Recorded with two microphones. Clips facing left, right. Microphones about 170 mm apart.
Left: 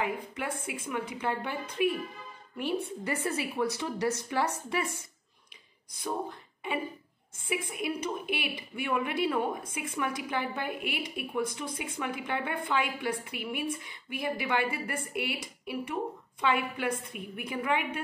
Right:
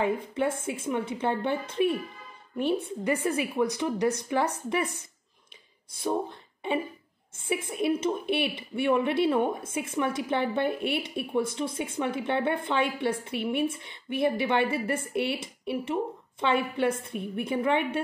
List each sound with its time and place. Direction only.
0.0 s speech: 25° right (ahead or behind)
3.0 s a woman's voice: 15° right (ahead or behind)
7.3 s speech: 30° right (ahead or behind)